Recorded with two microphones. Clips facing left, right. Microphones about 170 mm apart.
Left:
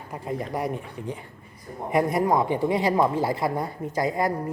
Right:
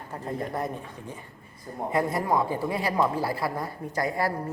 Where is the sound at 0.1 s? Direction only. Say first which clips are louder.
Left 2 dB; 10° left (ahead or behind).